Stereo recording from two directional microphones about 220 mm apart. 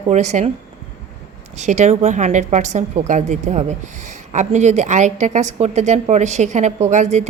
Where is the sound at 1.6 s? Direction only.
30° right (ahead or behind).